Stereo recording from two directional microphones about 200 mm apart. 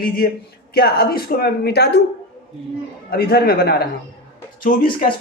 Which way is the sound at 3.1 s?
50° left (ahead or behind).